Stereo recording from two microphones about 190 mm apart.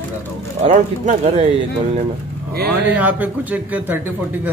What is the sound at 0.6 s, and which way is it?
Speech, 35° right (ahead or behind).